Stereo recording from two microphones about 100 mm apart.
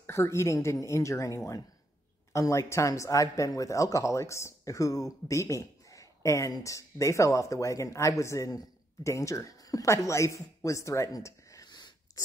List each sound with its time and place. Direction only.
0.0 s speech: 25° left (ahead or behind); by 11.9 s 45° left (ahead or behind)